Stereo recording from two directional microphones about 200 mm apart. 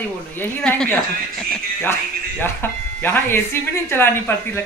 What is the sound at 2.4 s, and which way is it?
Speech, 10° left (ahead or behind).